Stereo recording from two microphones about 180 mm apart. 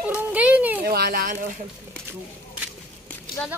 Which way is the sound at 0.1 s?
5° right (ahead or behind).